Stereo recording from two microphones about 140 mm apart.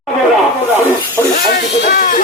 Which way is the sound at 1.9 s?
70° left (ahead or behind).